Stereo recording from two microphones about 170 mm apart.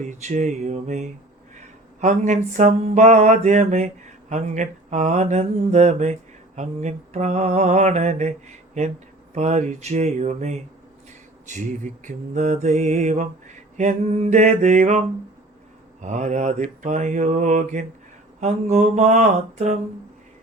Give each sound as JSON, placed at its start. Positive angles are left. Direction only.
{"t": 0.0, "sound": "mantra", "side_deg": -45}